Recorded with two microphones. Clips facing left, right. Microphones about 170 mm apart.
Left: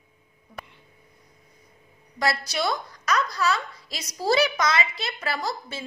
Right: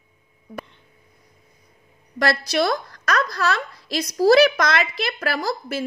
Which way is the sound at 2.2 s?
85° right.